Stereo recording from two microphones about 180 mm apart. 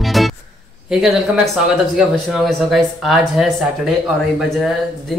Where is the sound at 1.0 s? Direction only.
Centre (ahead or behind).